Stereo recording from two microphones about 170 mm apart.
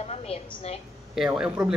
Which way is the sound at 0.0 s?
35° left (ahead or behind).